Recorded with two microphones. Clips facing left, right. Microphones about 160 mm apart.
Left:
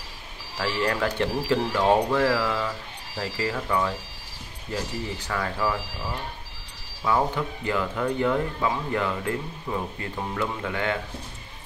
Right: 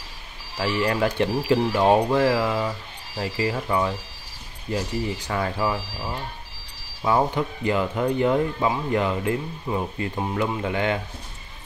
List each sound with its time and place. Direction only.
0.6 s speech: 15° right (ahead or behind)
7.1 s speech: 20° right (ahead or behind)